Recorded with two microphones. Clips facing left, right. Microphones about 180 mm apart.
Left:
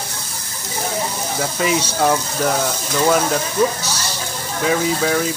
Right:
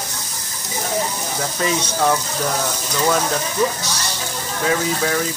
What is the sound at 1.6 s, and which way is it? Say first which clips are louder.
Speech: left 2 dB; 10° left (ahead or behind).